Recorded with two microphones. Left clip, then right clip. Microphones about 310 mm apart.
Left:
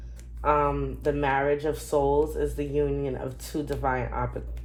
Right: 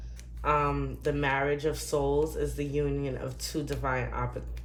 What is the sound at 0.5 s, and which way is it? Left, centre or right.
Speech, centre.